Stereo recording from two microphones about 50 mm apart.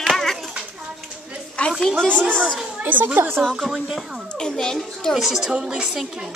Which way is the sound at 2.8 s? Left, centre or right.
Right.